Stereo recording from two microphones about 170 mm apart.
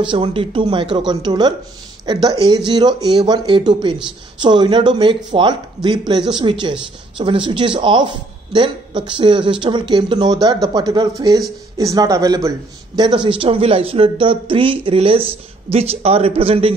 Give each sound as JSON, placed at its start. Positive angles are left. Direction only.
{"t": 0.0, "sound": "a man's voice", "side_deg": -30}